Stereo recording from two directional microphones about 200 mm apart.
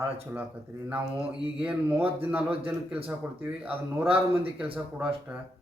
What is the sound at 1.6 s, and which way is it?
A man's voice, 5° right (ahead or behind).